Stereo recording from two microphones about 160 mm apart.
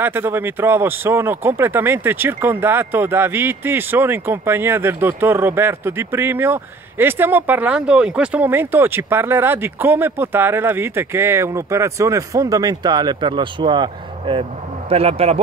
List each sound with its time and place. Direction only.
0.0 s speech: 15° right (ahead or behind); by 15.4 s 40° right (ahead or behind)